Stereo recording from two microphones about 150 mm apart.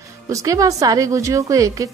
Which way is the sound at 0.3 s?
20° right (ahead or behind).